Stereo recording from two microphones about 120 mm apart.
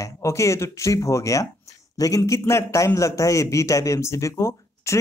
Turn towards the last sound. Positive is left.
turn(degrees=25)  # may be behind; listen again after turning